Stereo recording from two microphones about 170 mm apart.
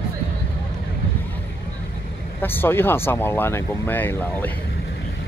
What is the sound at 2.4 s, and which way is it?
Speech, 10° left (ahead or behind).